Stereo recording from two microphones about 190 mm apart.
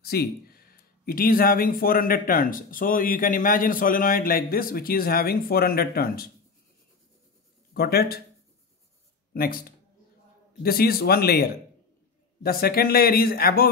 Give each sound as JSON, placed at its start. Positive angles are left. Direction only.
{"t": 0.0, "sound": "speech", "side_deg": 55}
{"t": 7.7, "sound": "speech", "side_deg": 55}
{"t": 9.3, "sound": "speech", "side_deg": 50}
{"t": 12.4, "sound": "speech", "side_deg": 55}